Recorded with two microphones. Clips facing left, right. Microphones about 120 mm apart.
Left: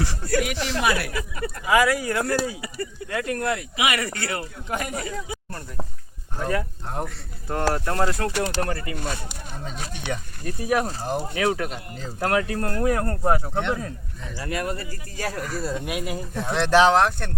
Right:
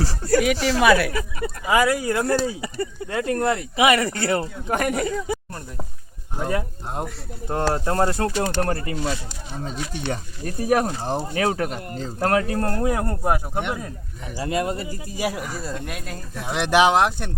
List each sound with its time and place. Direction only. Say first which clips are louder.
0.0 s speech: right 4 dB; 30° right (ahead or behind)
0.5 s speech: right 6 dB; 5° right (ahead or behind)
1.6 s speech: right 1 dB; 25° right (ahead or behind)
4.8 s speech: right 7 dB; 60° right (ahead or behind)
6.3 s speech: right 1 dB; 20° right (ahead or behind); by 9.0 s 35° right (ahead or behind)
9.0 s speech: right 4 dB; 55° left (ahead or behind)
10.1 s speech: right 2 dB; 45° right (ahead or behind)
11.0 s speech: right 1 dB; 35° right (ahead or behind)
12.8 s speech: even; 20° right (ahead or behind)
14.3 s speech: right 4 dB; 25° right (ahead or behind)
15.5 s speech: left 3 dB; centre (ahead or behind)
16.4 s speech: even; 15° right (ahead or behind)